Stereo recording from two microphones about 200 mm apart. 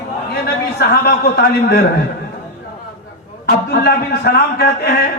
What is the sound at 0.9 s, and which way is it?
Speech, 55° left (ahead or behind).